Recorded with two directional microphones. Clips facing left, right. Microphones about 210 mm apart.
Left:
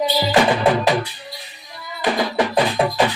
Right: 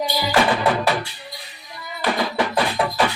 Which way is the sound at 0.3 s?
20° left (ahead or behind).